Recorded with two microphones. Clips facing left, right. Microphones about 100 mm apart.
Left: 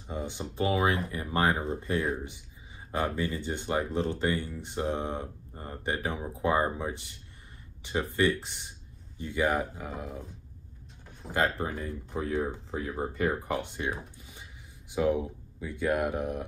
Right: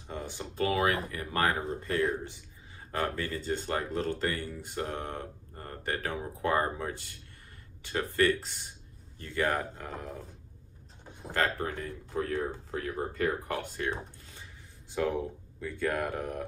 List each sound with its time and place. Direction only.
0.1 s speech: 20° left (ahead or behind)
11.3 s speech: 20° left (ahead or behind)
14.9 s speech: 15° left (ahead or behind)